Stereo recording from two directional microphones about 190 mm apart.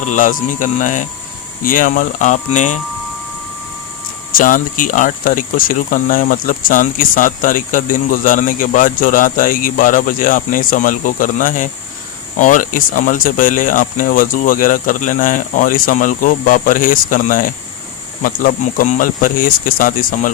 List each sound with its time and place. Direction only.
0.0 s speech: 40° left (ahead or behind)
4.3 s speech: 45° left (ahead or behind)